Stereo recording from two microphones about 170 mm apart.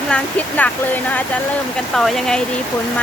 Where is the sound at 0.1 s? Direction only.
10° left (ahead or behind).